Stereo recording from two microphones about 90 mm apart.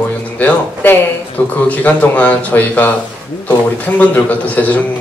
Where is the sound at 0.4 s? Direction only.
20° left (ahead or behind).